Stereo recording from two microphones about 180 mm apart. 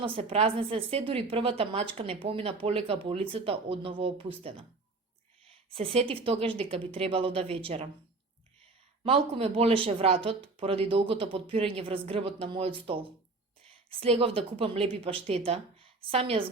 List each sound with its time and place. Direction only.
0.0 s a woman's voice: 35° right (ahead or behind)
9.0 s a woman's voice: 30° right (ahead or behind)